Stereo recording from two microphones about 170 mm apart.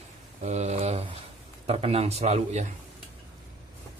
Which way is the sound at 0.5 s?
40° right (ahead or behind).